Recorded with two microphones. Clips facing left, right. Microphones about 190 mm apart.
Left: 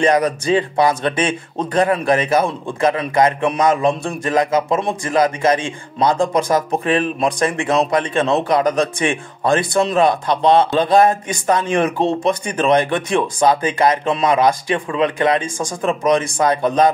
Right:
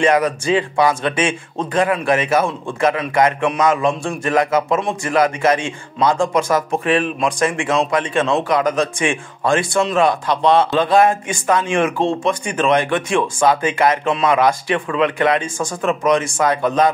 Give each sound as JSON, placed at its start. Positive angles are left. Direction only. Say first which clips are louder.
{"t": 0.0, "sound": "speech", "louder": "even", "side_deg": 35}